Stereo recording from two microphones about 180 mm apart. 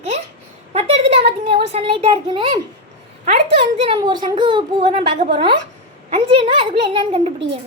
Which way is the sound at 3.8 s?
25° right (ahead or behind).